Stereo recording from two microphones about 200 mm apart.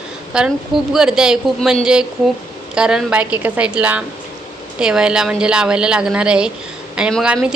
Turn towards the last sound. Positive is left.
turn(degrees=0)  # may be behind; listen again after turning